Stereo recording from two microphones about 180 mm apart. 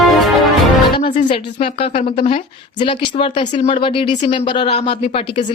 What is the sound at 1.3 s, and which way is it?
A woman's voice, 30° left (ahead or behind).